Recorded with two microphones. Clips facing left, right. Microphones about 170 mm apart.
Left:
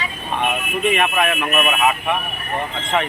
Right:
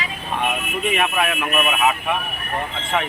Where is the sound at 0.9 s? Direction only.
5° right (ahead or behind).